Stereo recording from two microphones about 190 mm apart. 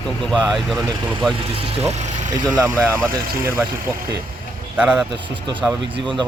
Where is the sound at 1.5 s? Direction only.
35° right (ahead or behind).